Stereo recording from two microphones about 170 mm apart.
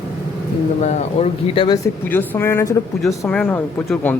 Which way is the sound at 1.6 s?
25° left (ahead or behind).